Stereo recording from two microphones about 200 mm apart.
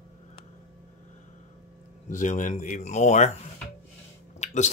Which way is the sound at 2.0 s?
40° left (ahead or behind).